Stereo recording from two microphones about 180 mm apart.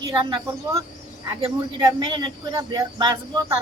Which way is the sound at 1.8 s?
20° right (ahead or behind).